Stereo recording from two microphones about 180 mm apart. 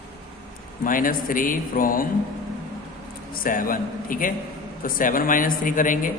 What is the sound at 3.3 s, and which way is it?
A man's voice, 50° left (ahead or behind).